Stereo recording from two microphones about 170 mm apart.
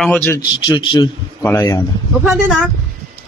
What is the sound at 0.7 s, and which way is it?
Speech, 25° left (ahead or behind).